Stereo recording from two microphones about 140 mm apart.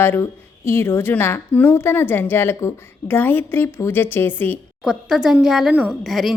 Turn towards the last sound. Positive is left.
turn(degrees=0)  # may be behind; listen again after turning